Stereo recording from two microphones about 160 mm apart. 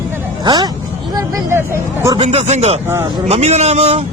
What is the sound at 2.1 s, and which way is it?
Speech, 40° right (ahead or behind).